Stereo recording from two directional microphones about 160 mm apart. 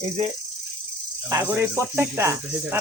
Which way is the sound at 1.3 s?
15° right (ahead or behind).